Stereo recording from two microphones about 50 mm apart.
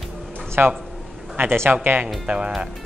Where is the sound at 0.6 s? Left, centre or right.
Right.